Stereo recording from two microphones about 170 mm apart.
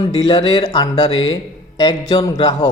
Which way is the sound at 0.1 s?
25° left (ahead or behind).